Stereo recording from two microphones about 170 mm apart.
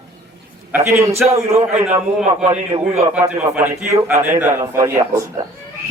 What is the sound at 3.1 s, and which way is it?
A man's voice, 10° right (ahead or behind).